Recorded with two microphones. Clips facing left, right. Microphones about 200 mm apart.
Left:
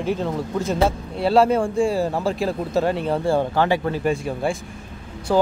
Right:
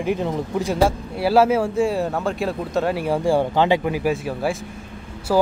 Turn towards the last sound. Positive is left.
turn(degrees=-5)  # may be behind; listen again after turning